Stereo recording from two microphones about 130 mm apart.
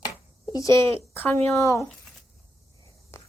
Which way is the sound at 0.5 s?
25° left (ahead or behind).